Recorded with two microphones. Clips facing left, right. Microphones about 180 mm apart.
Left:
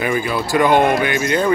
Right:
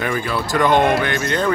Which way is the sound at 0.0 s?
10° left (ahead or behind).